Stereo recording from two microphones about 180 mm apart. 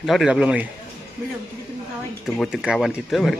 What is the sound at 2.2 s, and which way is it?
Speech, centre (ahead or behind).